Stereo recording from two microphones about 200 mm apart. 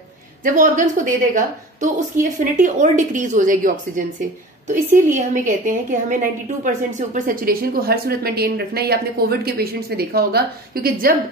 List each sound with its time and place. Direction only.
0.4 s a woman's voice: 40° right (ahead or behind)